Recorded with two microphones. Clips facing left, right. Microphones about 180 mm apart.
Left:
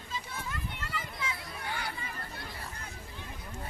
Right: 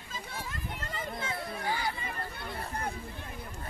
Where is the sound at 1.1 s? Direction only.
50° right (ahead or behind).